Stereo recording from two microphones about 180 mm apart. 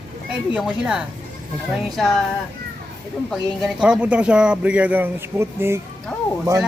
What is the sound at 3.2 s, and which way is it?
Speech, centre (ahead or behind).